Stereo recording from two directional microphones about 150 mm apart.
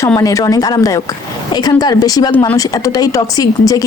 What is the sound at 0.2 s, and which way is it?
Speech, 20° left (ahead or behind).